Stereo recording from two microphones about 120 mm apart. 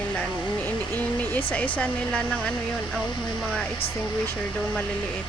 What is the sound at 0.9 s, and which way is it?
Speech, 15° left (ahead or behind).